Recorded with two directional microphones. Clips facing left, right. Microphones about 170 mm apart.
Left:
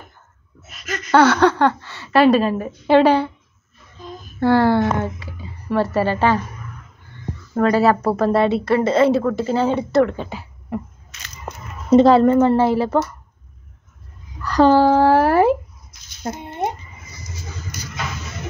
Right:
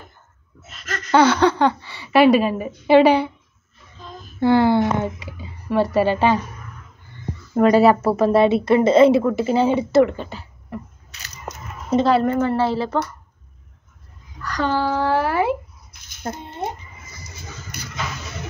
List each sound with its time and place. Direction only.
0.7 s a sound: 10° left (ahead or behind)
1.1 s a woman's voice: 10° right (ahead or behind)
4.4 s a woman's voice: 15° right (ahead or behind)
7.5 s a woman's voice: 15° right (ahead or behind)
11.9 s a woman's voice: 25° left (ahead or behind)
14.5 s speech: 35° left (ahead or behind)
16.2 s speech: 15° left (ahead or behind)